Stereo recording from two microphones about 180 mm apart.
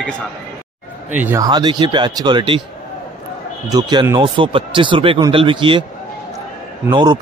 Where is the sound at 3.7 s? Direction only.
20° right (ahead or behind).